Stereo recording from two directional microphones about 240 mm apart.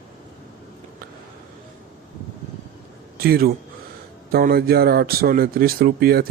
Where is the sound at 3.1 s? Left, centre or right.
Right.